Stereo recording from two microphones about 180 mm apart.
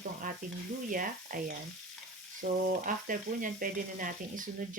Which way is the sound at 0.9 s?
50° right (ahead or behind).